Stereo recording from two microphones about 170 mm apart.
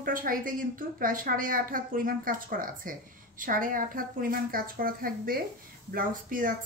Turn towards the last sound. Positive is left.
turn(degrees=-55)  # may be behind; listen again after turning